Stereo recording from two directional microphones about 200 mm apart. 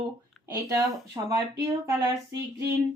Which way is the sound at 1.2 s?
15° right (ahead or behind).